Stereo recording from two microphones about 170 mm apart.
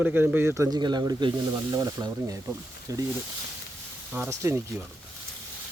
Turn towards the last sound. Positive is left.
turn(degrees=-15)  # may be behind; listen again after turning